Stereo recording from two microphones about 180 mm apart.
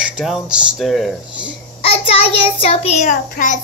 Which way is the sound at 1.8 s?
30° left (ahead or behind).